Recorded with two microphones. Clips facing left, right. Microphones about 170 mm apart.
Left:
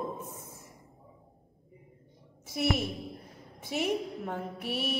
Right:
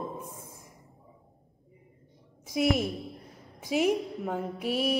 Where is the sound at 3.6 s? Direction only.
5° right (ahead or behind).